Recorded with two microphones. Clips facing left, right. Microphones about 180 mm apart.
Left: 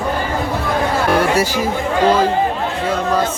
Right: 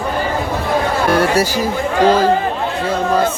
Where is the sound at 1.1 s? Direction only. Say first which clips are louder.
Right 2 dB; 40° right (ahead or behind).